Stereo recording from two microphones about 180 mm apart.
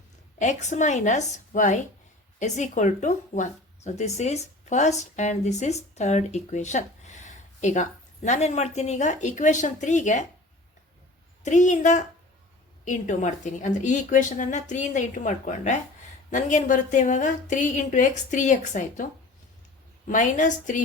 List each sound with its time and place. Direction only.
0.3 s speech: 40° left (ahead or behind)
11.4 s a woman's voice: 40° left (ahead or behind)
20.1 s a woman's voice: 45° left (ahead or behind)